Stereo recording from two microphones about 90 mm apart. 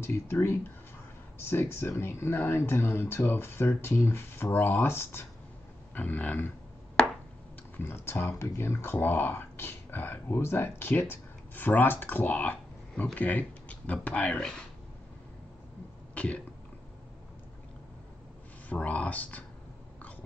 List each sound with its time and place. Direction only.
0.0 s speech: 30° left (ahead or behind)
7.7 s speech: 25° left (ahead or behind)
18.7 s speech: 15° left (ahead or behind)